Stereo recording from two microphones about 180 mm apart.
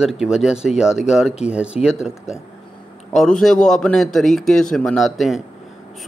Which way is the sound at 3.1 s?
Centre (ahead or behind).